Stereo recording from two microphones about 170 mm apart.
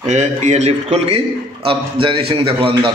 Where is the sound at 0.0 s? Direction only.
45° right (ahead or behind).